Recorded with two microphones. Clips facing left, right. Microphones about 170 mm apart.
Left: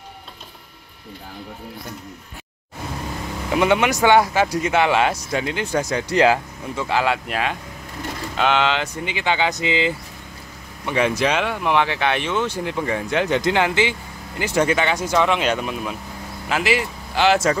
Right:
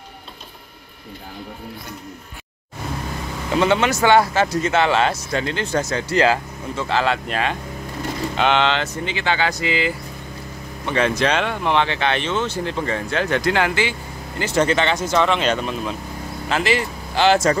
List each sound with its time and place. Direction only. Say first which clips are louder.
3.5 s speech: even; 15° left (ahead or behind)
10.9 s speech: even; 10° left (ahead or behind)